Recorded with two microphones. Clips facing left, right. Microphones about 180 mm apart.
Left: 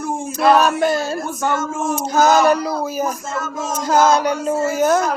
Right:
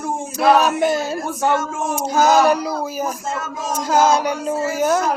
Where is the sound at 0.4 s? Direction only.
15° right (ahead or behind).